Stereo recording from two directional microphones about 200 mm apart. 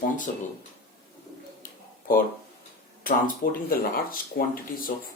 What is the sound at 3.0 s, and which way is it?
Speech, 45° left (ahead or behind).